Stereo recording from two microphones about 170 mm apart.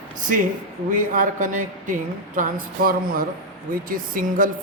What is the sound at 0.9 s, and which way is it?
Speech, 50° right (ahead or behind).